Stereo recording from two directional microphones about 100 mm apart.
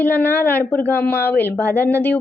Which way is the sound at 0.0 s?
20° left (ahead or behind).